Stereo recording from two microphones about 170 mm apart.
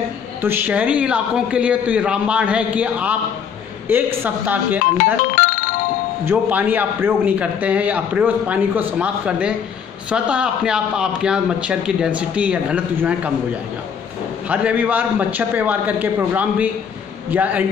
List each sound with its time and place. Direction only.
0.4 s a man's voice: 10° right (ahead or behind)
4.9 s music: 55° left (ahead or behind)
6.2 s a man's voice: 10° right (ahead or behind)
14.5 s a man's voice: 10° right (ahead or behind)